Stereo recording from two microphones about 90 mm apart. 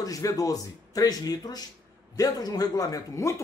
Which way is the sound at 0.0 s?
40° left (ahead or behind).